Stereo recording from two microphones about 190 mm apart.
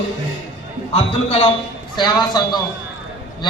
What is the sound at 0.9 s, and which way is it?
Speech, 30° left (ahead or behind).